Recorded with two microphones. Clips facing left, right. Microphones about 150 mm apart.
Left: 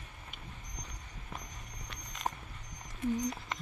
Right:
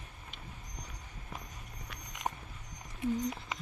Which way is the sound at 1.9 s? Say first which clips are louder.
Even; 10° right (ahead or behind).